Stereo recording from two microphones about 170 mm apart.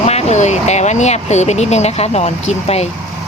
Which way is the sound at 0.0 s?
40° left (ahead or behind).